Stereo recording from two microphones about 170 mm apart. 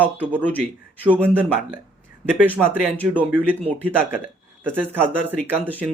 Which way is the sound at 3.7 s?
10° left (ahead or behind).